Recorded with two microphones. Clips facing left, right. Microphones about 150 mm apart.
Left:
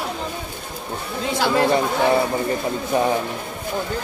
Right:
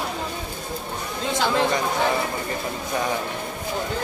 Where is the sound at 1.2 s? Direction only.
5° left (ahead or behind).